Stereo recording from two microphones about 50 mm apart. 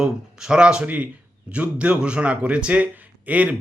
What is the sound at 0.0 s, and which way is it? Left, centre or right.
A man's voice, centre.